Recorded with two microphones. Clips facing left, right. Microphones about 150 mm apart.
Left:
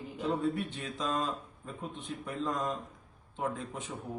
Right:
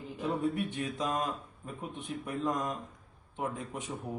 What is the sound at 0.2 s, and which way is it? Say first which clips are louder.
A man's voice: even; 10° right (ahead or behind).